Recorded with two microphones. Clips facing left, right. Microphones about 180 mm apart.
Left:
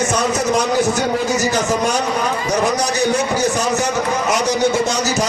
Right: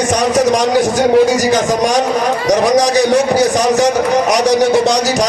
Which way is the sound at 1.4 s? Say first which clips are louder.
Right 5 dB; 90° right.